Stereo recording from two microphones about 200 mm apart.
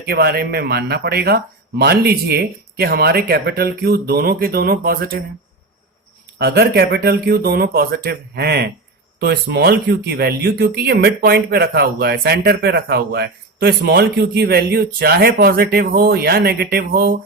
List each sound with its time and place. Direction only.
0.1 s speech: 50° right (ahead or behind)
6.4 s speech: 55° right (ahead or behind)